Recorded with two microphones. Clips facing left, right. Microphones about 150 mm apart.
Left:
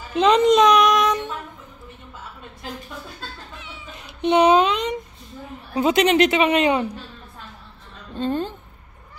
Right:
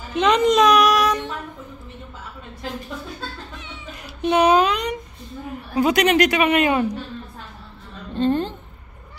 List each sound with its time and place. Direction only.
0.1 s speech: 30° left (ahead or behind)
4.0 s a sound: 20° left (ahead or behind)
5.8 s a woman's voice: 25° left (ahead or behind)
8.2 s a woman's voice: 10° left (ahead or behind)